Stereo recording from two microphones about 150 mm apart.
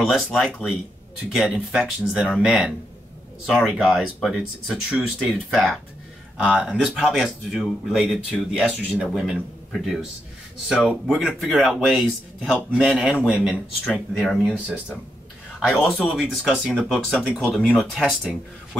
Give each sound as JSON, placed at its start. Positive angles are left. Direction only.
{"t": 0.0, "sound": "speech", "side_deg": 0}